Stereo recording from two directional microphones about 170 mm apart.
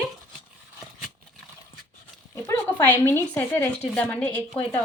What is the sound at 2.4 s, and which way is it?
Speech, 10° left (ahead or behind).